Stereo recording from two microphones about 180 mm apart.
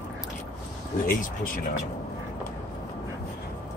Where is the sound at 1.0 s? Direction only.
50° left (ahead or behind).